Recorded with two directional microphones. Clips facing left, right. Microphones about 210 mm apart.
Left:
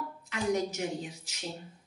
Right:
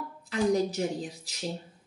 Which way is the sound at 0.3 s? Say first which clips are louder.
Right 5 dB; 35° right (ahead or behind).